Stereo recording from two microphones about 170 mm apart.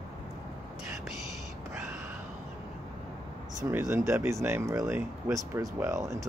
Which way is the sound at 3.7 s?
15° right (ahead or behind).